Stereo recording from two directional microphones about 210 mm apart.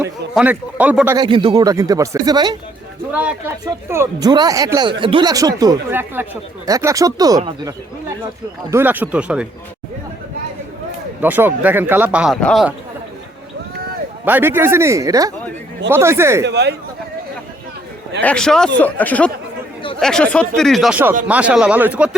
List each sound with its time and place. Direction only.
0.0 s speech: 5° right (ahead or behind)
1.1 s speech: 20° right (ahead or behind)
3.1 s speech: 5° right (ahead or behind)
8.7 s speech: 10° right (ahead or behind)
11.2 s speech: 10° right (ahead or behind)
14.3 s speech: 10° right (ahead or behind)
16.5 s a man's voice: 55° right (ahead or behind)
18.2 s speech: 5° left (ahead or behind)